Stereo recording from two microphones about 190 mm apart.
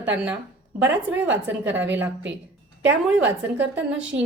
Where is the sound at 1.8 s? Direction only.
70° right (ahead or behind).